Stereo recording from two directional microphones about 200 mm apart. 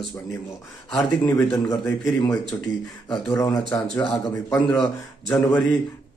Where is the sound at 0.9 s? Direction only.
5° left (ahead or behind).